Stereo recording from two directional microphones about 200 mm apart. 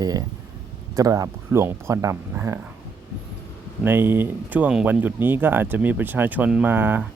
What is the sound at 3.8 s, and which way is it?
Speech, 10° right (ahead or behind).